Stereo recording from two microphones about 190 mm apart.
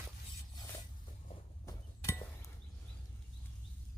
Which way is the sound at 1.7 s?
15° left (ahead or behind).